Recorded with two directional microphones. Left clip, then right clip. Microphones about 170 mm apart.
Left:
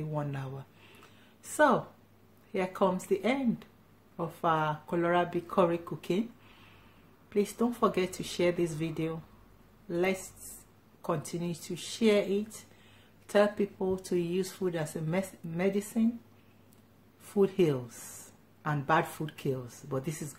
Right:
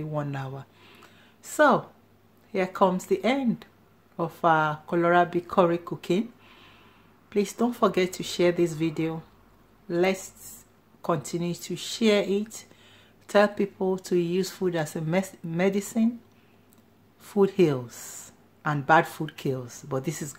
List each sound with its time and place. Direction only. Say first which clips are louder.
0.1 s speech: right 5 dB; 30° right (ahead or behind)
2.5 s speech: right 6 dB; 30° right (ahead or behind)
7.2 s speech: right 4 dB; 30° right (ahead or behind)
17.3 s speech: right 5 dB; 30° right (ahead or behind)